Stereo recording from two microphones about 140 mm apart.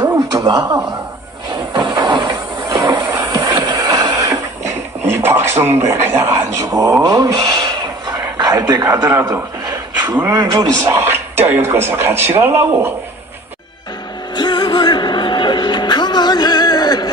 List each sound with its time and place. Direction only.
0.0 s a sound: 25° right (ahead or behind)
1.5 s hiss: 35° right (ahead or behind)
3.5 s a sound: 30° right (ahead or behind)
5.0 s speech: 15° right (ahead or behind)
6.7 s speech: 25° right (ahead or behind)
14.3 s music: 35° left (ahead or behind)